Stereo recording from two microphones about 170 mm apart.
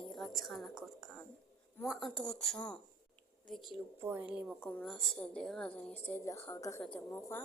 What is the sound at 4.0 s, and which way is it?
Speech, 15° right (ahead or behind).